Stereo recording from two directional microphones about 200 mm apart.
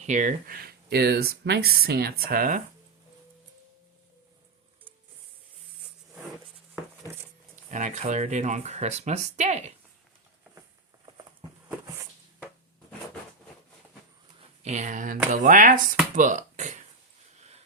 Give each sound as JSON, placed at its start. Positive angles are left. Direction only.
{"t": 0.0, "sound": "speech", "side_deg": -35}
{"t": 7.5, "sound": "speech", "side_deg": -40}
{"t": 14.6, "sound": "speech", "side_deg": -35}